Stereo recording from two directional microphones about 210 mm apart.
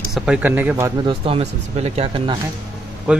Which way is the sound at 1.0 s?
25° right (ahead or behind).